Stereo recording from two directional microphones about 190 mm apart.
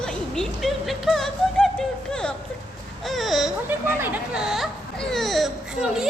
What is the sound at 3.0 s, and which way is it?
Baby cry, centre (ahead or behind).